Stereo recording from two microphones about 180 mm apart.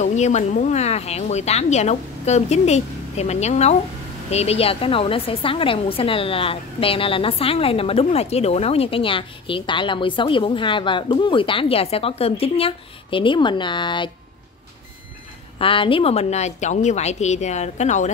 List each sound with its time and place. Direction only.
0.0 s a woman's voice: 40° left (ahead or behind)
15.6 s a woman's voice: 30° left (ahead or behind)